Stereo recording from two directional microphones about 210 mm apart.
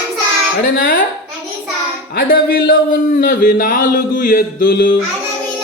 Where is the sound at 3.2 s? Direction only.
40° left (ahead or behind).